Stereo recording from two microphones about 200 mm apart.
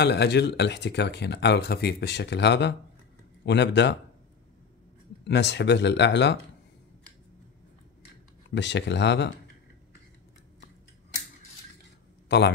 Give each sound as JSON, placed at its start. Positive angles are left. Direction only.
{"t": 0.0, "sound": "speech", "side_deg": 55}
{"t": 5.2, "sound": "speech", "side_deg": 60}
{"t": 8.5, "sound": "speech", "side_deg": 60}
{"t": 12.3, "sound": "a man's voice", "side_deg": 60}